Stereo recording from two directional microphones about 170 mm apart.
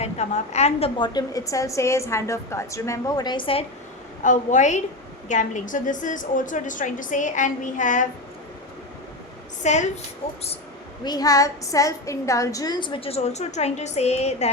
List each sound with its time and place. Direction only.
0.0 s a woman's voice: 40° left (ahead or behind)
4.2 s a woman's voice: 45° left (ahead or behind)
9.6 s a woman's voice: 45° left (ahead or behind)
11.0 s a woman's voice: 25° left (ahead or behind); by 14.5 s 40° left (ahead or behind)